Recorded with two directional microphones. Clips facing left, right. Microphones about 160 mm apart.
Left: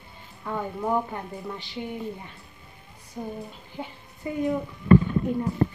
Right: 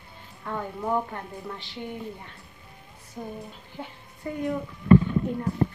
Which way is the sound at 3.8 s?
15° left (ahead or behind).